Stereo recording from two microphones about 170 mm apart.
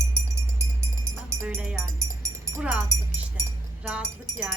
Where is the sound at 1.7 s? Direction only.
15° right (ahead or behind).